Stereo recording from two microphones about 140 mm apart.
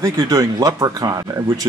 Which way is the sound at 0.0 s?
25° right (ahead or behind).